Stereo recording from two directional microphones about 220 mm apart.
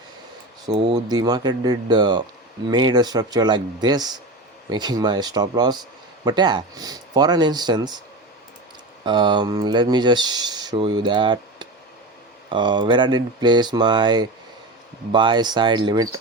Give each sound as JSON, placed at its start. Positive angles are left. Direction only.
{"t": 0.7, "sound": "speech", "side_deg": -25}
{"t": 9.0, "sound": "speech", "side_deg": -20}